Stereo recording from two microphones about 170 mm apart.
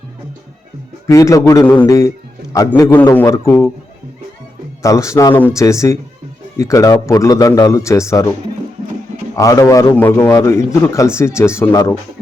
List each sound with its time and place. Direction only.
1.0 s a man's voice: 20° left (ahead or behind)
4.8 s a man's voice: 20° left (ahead or behind)
9.3 s a man's voice: 20° left (ahead or behind)